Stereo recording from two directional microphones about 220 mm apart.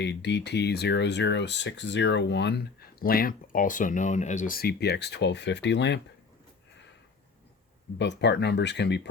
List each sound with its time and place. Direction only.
0.0 s speech: 50° left (ahead or behind)
7.9 s speech: 50° left (ahead or behind)